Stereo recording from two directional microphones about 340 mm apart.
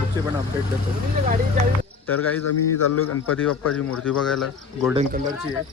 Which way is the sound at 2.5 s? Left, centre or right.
Left.